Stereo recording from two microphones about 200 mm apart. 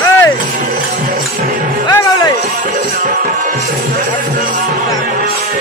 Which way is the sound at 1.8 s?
15° left (ahead or behind).